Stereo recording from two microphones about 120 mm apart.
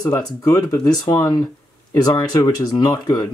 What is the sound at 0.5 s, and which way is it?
Speech, 30° left (ahead or behind).